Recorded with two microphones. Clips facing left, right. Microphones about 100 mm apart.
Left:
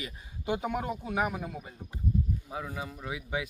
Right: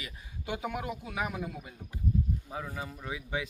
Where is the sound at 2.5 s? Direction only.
5° left (ahead or behind).